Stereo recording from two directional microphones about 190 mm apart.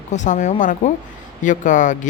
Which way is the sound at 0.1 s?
40° left (ahead or behind).